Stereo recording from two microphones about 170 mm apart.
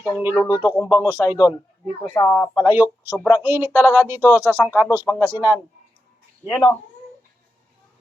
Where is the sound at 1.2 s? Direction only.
Centre (ahead or behind).